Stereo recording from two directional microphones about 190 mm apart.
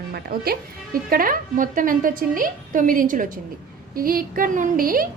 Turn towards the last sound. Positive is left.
turn(degrees=-50)  # may be behind; listen again after turning